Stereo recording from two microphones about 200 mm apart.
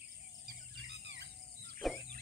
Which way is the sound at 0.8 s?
60° right (ahead or behind).